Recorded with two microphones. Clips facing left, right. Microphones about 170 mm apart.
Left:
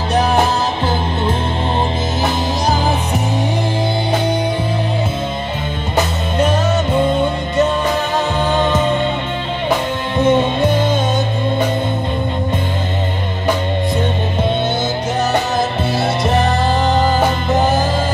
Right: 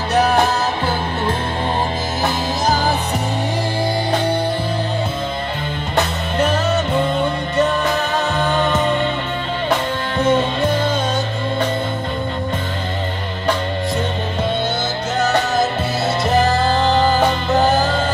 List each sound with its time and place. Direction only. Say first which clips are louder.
8.4 s music: left 2 dB; 15° left (ahead or behind)
10.1 s music: left 3 dB; 20° left (ahead or behind)
16.3 s music: right 2 dB; 20° left (ahead or behind)